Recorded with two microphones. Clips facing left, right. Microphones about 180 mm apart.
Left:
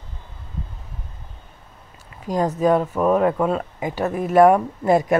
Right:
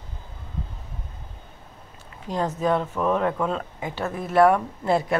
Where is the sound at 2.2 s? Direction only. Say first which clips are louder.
Left 5 dB; 10° left (ahead or behind).